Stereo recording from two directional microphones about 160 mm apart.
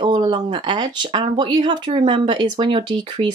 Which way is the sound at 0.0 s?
30° right (ahead or behind).